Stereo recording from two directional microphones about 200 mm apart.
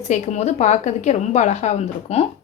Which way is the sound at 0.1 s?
35° left (ahead or behind).